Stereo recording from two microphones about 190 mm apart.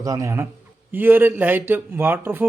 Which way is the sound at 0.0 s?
15° right (ahead or behind).